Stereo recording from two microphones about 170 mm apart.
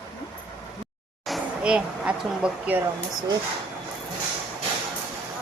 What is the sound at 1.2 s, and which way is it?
Speech, 5° right (ahead or behind).